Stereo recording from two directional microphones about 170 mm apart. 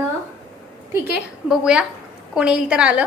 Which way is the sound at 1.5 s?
5° right (ahead or behind).